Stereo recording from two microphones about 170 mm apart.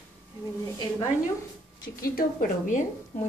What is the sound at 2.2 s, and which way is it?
Speech, 55° left (ahead or behind).